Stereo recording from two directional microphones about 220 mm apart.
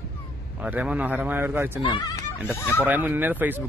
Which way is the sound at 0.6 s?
5° right (ahead or behind).